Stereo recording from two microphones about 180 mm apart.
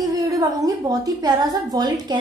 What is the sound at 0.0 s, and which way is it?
A woman's voice, 20° right (ahead or behind).